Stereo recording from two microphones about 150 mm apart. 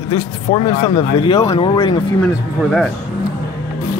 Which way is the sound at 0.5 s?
40° left (ahead or behind).